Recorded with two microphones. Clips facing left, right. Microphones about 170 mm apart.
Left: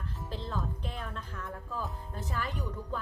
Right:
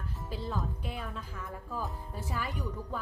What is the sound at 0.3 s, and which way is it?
Speech, 5° right (ahead or behind).